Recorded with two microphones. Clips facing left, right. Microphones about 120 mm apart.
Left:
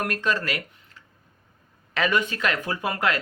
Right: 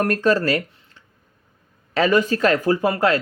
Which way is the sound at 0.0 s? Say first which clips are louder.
Right 8 dB; 40° right (ahead or behind).